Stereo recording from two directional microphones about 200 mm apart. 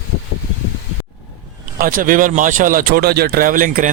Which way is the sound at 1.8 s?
45° right (ahead or behind).